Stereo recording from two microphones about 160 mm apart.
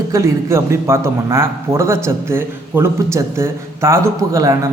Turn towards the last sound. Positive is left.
turn(degrees=-20)  # may be behind; listen again after turning